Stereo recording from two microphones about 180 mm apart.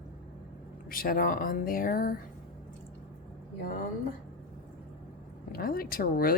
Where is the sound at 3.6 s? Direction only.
50° left (ahead or behind).